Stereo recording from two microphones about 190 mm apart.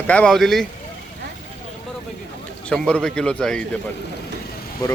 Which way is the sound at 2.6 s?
5° left (ahead or behind).